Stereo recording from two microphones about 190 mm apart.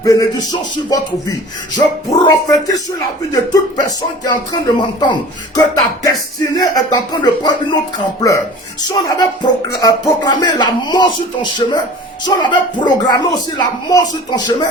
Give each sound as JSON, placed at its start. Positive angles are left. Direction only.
{"t": 0.0, "sound": "speech", "side_deg": 20}
{"t": 1.7, "sound": "speech", "side_deg": 20}
{"t": 8.8, "sound": "speech", "side_deg": 20}